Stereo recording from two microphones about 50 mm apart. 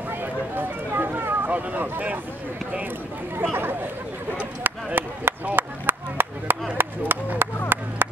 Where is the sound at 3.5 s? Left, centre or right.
Right.